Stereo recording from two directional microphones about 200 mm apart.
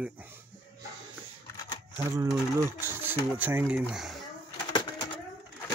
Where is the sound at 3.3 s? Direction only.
10° right (ahead or behind).